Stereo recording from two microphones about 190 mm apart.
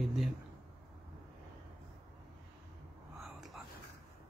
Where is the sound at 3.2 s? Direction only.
Centre (ahead or behind).